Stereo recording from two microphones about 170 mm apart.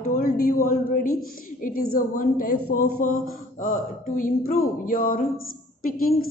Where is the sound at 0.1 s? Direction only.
55° left (ahead or behind).